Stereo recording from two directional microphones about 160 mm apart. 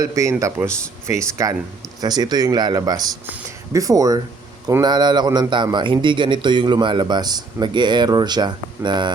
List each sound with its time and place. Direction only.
0.0 s a man's voice: 20° right (ahead or behind)